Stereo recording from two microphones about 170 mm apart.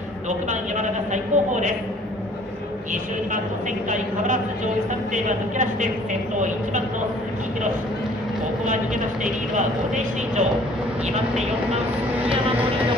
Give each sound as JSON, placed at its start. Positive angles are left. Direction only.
{"t": 0.3, "sound": "a woman's voice", "side_deg": -45}
{"t": 5.1, "sound": "a woman's voice", "side_deg": -50}
{"t": 9.2, "sound": "a woman's voice", "side_deg": -45}